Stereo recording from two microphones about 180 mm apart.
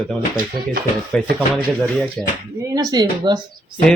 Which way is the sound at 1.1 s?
5° left (ahead or behind).